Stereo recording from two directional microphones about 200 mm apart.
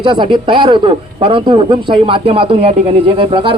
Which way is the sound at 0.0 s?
25° right (ahead or behind).